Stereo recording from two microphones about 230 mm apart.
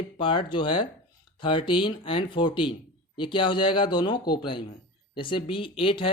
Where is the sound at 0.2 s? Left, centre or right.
Left.